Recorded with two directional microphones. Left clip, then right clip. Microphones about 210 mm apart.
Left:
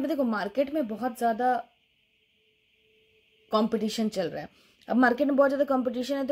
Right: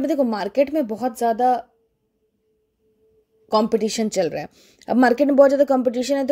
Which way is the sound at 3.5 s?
30° right (ahead or behind).